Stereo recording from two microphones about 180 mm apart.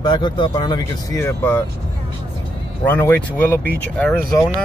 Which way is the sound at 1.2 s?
10° left (ahead or behind).